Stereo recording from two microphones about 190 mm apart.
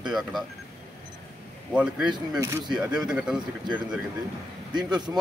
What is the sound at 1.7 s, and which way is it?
Speech, 5° right (ahead or behind).